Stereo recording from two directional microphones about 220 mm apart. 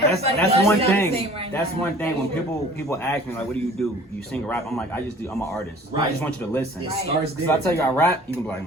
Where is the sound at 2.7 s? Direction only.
10° left (ahead or behind).